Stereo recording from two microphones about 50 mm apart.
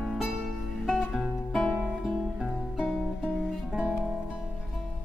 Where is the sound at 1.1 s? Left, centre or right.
Centre.